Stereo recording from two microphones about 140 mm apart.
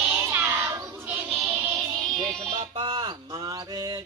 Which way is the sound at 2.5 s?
40° right (ahead or behind).